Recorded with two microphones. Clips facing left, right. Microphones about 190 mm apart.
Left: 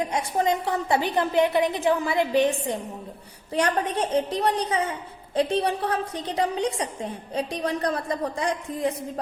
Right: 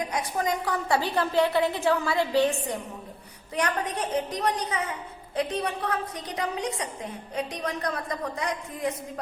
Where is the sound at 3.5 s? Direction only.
30° left (ahead or behind).